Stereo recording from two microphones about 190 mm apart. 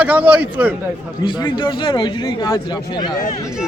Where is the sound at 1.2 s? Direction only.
25° left (ahead or behind).